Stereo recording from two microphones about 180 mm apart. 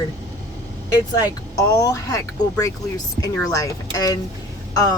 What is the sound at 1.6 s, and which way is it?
A woman's voice, 20° left (ahead or behind).